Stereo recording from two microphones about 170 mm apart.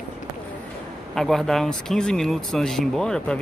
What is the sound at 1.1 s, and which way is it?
Speech, centre (ahead or behind).